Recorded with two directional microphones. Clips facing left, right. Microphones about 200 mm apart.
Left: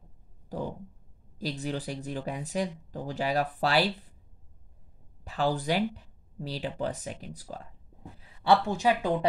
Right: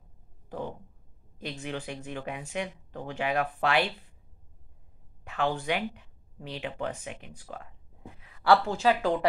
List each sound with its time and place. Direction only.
0.5 s a sound: 35° left (ahead or behind)
1.4 s speech: 35° left (ahead or behind)
5.2 s speech: 35° left (ahead or behind); by 9.1 s 15° left (ahead or behind)